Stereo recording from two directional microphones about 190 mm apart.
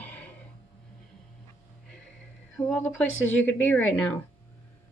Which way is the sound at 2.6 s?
10° left (ahead or behind).